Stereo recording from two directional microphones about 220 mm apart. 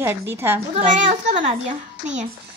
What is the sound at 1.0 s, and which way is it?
A woman's voice, 35° right (ahead or behind).